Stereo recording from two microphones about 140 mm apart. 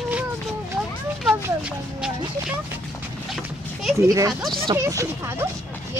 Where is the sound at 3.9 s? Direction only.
25° right (ahead or behind).